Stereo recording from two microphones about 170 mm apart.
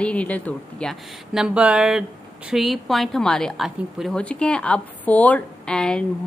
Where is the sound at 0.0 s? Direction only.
5° left (ahead or behind).